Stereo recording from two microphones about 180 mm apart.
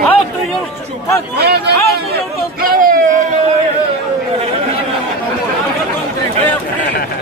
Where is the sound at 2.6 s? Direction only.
50° right (ahead or behind).